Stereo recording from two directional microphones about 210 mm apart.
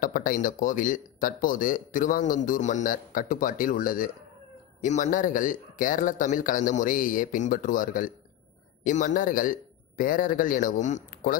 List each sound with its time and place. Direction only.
0.0 s speech: 40° left (ahead or behind)